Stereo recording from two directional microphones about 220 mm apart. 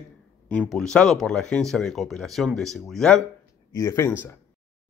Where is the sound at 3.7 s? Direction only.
15° left (ahead or behind).